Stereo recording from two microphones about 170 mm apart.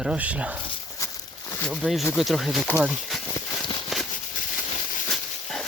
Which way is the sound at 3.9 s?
Centre (ahead or behind).